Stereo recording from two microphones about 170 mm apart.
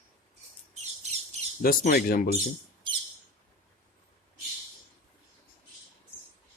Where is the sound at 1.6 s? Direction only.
60° left (ahead or behind).